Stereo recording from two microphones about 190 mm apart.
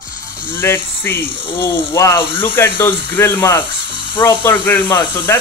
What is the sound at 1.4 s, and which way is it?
Speech, 25° left (ahead or behind).